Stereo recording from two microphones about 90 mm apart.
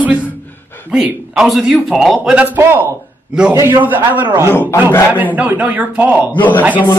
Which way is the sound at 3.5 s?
30° right (ahead or behind).